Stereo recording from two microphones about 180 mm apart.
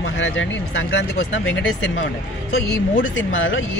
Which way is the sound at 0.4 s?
90° left.